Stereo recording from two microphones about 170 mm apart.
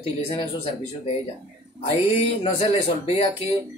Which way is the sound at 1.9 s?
35° left (ahead or behind).